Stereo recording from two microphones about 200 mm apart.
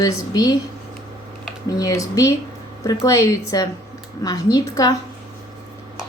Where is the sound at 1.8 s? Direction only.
15° left (ahead or behind).